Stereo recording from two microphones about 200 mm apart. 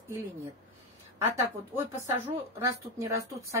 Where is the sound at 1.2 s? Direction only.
10° right (ahead or behind).